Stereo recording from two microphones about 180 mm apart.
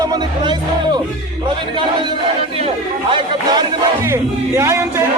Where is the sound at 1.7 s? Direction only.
25° right (ahead or behind).